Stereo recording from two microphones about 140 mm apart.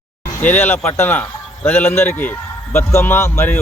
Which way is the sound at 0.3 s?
15° left (ahead or behind).